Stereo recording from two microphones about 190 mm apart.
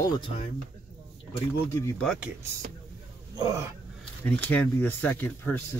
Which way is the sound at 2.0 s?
Centre (ahead or behind).